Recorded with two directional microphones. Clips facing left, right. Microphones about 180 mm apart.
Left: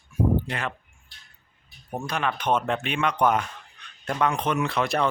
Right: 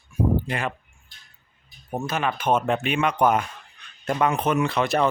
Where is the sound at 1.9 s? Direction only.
5° right (ahead or behind).